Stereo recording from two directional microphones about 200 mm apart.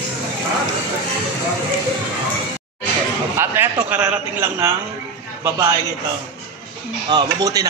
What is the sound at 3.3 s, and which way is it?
A man's voice, 10° right (ahead or behind).